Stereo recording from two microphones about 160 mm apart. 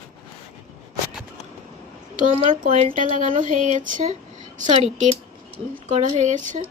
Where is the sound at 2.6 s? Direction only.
60° right (ahead or behind).